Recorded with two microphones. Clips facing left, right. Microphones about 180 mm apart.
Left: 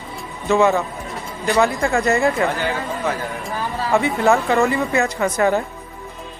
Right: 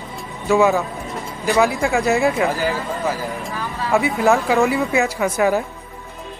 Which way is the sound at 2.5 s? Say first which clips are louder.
Right 1 dB; 35° right (ahead or behind).